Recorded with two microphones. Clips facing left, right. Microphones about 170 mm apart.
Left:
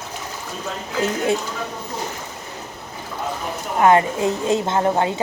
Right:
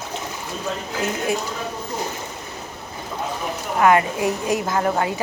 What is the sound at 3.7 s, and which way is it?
A woman's voice, 25° left (ahead or behind).